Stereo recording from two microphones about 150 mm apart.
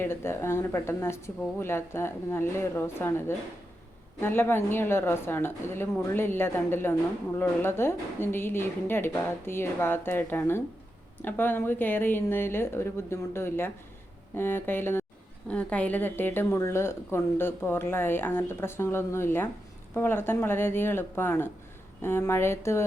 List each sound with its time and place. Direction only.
0.0 s a woman's voice: 15° left (ahead or behind)